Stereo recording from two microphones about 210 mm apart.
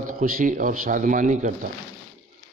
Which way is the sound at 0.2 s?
40° right (ahead or behind).